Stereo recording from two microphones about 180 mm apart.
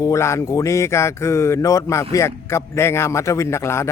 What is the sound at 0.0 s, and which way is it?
A man's voice, 15° left (ahead or behind).